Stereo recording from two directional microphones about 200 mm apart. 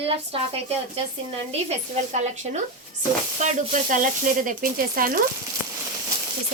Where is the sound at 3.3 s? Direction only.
35° right (ahead or behind).